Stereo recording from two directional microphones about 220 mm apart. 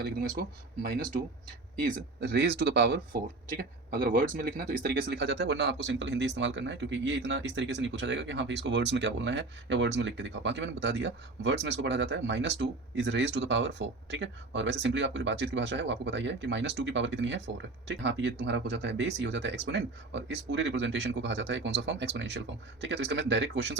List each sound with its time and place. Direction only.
0.0 s speech: 45° right (ahead or behind)